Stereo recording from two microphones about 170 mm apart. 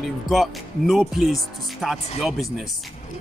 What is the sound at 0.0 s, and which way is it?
Speech, centre (ahead or behind).